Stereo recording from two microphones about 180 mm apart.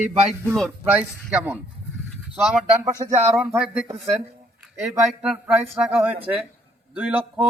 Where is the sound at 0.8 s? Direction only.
10° right (ahead or behind).